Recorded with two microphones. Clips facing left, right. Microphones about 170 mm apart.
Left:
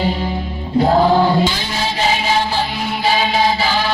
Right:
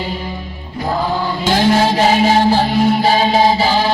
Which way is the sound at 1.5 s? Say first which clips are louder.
Right 9 dB; 55° right (ahead or behind).